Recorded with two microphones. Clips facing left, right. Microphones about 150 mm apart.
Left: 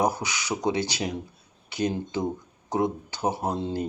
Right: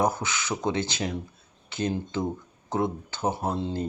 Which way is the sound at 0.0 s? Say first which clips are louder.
Even; 15° left (ahead or behind).